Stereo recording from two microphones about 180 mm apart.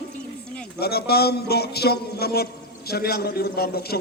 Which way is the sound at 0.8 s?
60° left (ahead or behind).